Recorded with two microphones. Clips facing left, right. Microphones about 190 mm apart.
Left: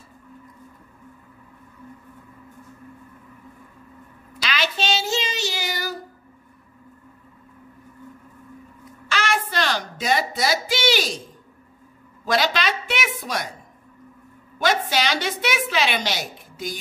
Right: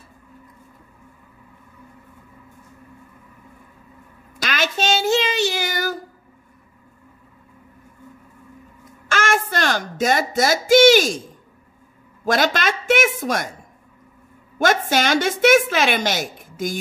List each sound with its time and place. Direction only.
4.4 s child singing: 45° right (ahead or behind)
9.1 s music: 50° right (ahead or behind)
12.3 s a woman's voice: 50° right (ahead or behind)
14.6 s a woman's voice: 50° right (ahead or behind)